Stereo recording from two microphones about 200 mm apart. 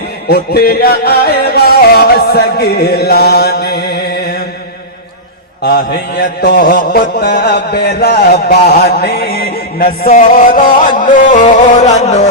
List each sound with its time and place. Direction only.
0.3 s music: 50° left (ahead or behind)
5.6 s mantra: 55° left (ahead or behind)
11.6 s music: 35° left (ahead or behind)